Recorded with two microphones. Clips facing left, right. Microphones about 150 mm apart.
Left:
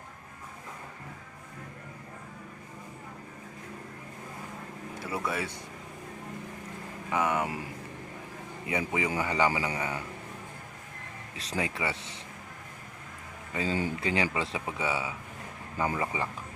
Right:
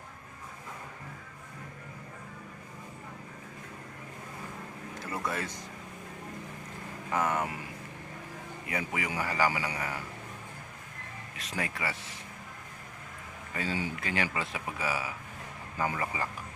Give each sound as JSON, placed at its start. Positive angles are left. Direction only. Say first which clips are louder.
{"t": 5.0, "sound": "speech", "louder": "left 2 dB", "side_deg": 5}
{"t": 7.1, "sound": "speech", "louder": "left 1 dB", "side_deg": 10}
{"t": 8.6, "sound": "speech", "louder": "left 4 dB", "side_deg": 20}
{"t": 11.7, "sound": "speech", "louder": "left 3 dB", "side_deg": 25}
{"t": 13.5, "sound": "speech", "louder": "left 4 dB", "side_deg": 25}